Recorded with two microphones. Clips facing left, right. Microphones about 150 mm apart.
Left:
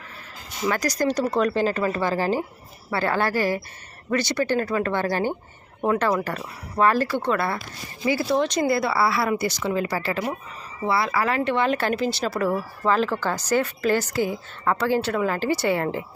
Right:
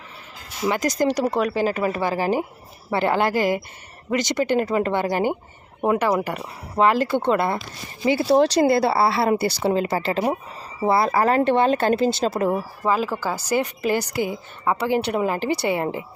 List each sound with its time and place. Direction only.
0.7 s speech: 20° right (ahead or behind)
10.8 s speech: 45° right (ahead or behind)
11.6 s speech: 25° right (ahead or behind)